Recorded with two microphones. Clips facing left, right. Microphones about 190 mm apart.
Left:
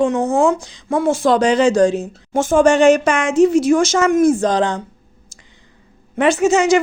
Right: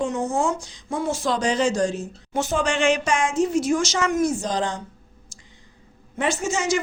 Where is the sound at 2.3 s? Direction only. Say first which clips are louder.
Left 11 dB; 50° left (ahead or behind).